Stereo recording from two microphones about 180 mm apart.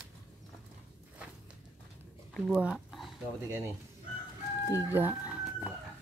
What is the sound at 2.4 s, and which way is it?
Speech, 5° right (ahead or behind).